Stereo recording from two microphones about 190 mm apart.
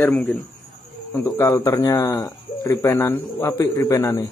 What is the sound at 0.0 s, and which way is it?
A man's voice, 5° left (ahead or behind).